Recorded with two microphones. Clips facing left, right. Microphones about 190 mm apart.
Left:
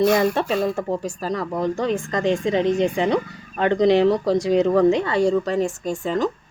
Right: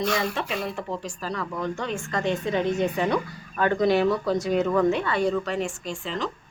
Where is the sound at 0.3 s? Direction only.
40° left (ahead or behind).